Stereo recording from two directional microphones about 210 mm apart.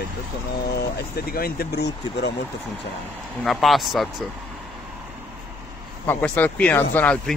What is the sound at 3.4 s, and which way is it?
Speech, centre (ahead or behind).